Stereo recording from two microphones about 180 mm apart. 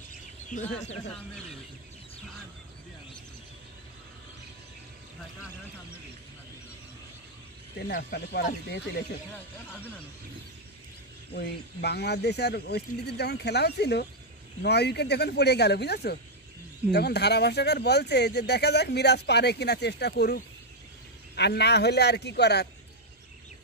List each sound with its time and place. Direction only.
0.5 s speech: 40° left (ahead or behind)
7.9 s speech: 60° left (ahead or behind)
11.3 s speech: 65° left (ahead or behind)